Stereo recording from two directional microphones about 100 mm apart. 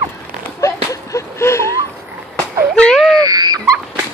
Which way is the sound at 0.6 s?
30° left (ahead or behind).